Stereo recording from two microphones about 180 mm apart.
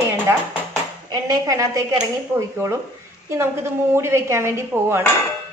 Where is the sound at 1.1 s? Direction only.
20° right (ahead or behind).